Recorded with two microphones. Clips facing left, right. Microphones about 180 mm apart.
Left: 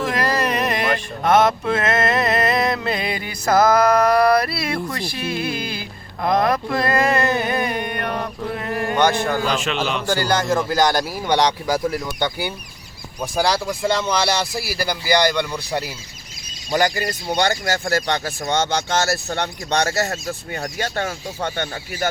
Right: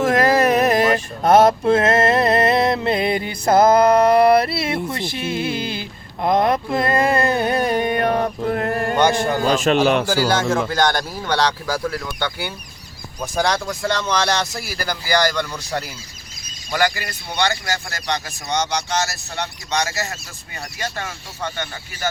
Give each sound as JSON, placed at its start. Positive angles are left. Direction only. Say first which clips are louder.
{"t": 0.0, "sound": "a sound", "louder": "right 6 dB", "side_deg": -45}
{"t": 1.2, "sound": "mantra", "louder": "right 3 dB", "side_deg": -35}
{"t": 6.2, "sound": "a sound", "louder": "right 1 dB", "side_deg": -25}
{"t": 9.4, "sound": "speech", "louder": "right 5 dB", "side_deg": -45}
{"t": 9.8, "sound": "speech", "louder": "right 7 dB", "side_deg": -55}
{"t": 10.1, "sound": "speech", "louder": "right 1 dB", "side_deg": -5}
{"t": 11.2, "sound": "speech", "louder": "left 1 dB", "side_deg": 15}
{"t": 17.0, "sound": "speech", "louder": "left 3 dB", "side_deg": 45}